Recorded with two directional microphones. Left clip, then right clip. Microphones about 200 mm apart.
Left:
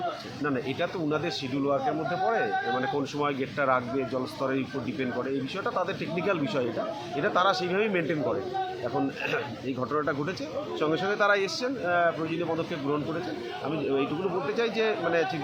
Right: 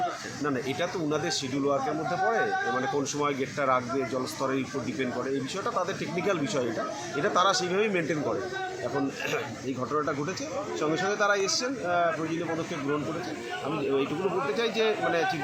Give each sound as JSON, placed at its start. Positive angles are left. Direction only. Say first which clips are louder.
{"t": 0.4, "sound": "a man's voice", "louder": "even", "side_deg": 5}
{"t": 2.2, "sound": "speech", "louder": "right 1 dB", "side_deg": 10}
{"t": 10.8, "sound": "speech", "louder": "left 1 dB", "side_deg": 5}
{"t": 14.5, "sound": "a man's voice", "louder": "left 1 dB", "side_deg": 5}